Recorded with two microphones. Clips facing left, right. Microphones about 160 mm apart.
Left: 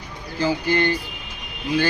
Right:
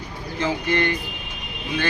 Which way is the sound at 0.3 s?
35° left (ahead or behind).